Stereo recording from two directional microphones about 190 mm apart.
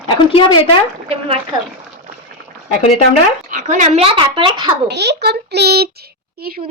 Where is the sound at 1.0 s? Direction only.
30° right (ahead or behind).